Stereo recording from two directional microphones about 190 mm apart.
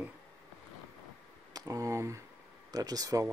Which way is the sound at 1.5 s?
20° right (ahead or behind).